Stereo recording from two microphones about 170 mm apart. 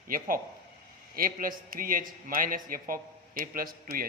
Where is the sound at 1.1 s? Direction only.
55° right (ahead or behind).